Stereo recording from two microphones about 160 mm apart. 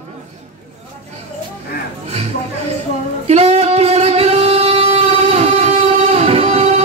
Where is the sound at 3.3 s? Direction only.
40° right (ahead or behind).